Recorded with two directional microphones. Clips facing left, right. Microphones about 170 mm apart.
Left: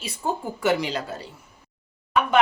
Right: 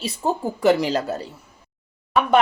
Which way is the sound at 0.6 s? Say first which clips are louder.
Right 6 dB; 40° right (ahead or behind).